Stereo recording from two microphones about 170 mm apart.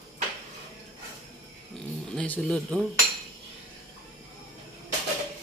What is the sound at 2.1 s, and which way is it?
Speech, 5° left (ahead or behind).